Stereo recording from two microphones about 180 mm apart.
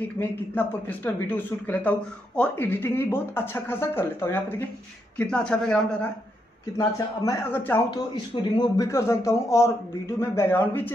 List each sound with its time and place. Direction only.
0.2 s speech: 10° left (ahead or behind)
6.8 s speech: 15° left (ahead or behind)
8.1 s speech: 25° left (ahead or behind); by 10.9 s 10° left (ahead or behind)